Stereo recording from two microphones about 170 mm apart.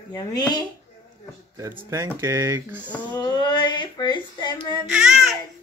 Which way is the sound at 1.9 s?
15° right (ahead or behind).